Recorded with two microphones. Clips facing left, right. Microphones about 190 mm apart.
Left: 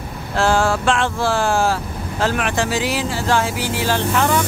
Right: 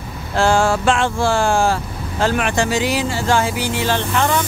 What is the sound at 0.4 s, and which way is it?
Speech, centre (ahead or behind).